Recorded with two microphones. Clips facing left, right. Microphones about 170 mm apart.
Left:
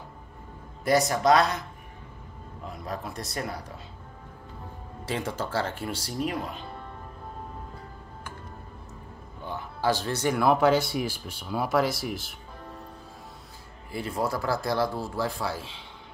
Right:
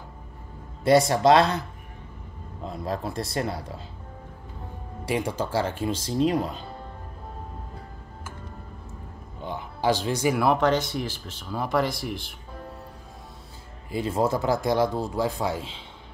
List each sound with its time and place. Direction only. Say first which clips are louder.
0.8 s speech: right 4 dB; 25° right (ahead or behind)
2.6 s speech: right 5 dB; 30° right (ahead or behind)
5.0 s speech: right 4 dB; 15° right (ahead or behind)
6.2 s speech: right 8 dB; 35° right (ahead or behind)
9.4 s speech: right 2 dB; 15° right (ahead or behind); by 12.4 s 5° left (ahead or behind)
13.9 s speech: right 5 dB; 25° right (ahead or behind)